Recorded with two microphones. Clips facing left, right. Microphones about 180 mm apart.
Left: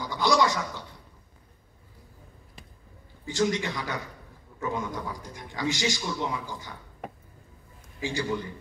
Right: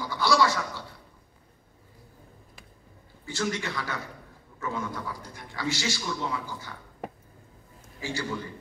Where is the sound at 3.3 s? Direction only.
15° left (ahead or behind).